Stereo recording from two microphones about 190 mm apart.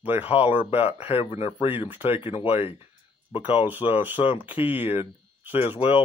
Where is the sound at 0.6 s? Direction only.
30° left (ahead or behind).